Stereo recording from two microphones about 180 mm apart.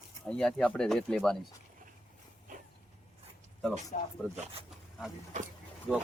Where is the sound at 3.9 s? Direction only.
50° left (ahead or behind).